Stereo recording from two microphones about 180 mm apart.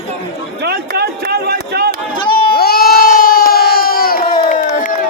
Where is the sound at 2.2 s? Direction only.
25° left (ahead or behind).